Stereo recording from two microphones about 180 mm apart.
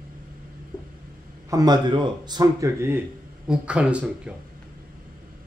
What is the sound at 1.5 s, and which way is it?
Speech, 20° right (ahead or behind).